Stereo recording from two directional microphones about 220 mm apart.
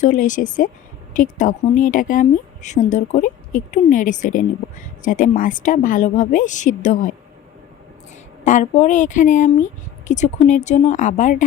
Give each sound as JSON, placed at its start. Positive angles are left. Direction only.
{"t": 0.0, "sound": "a woman's voice", "side_deg": 35}
{"t": 8.4, "sound": "a woman's voice", "side_deg": 30}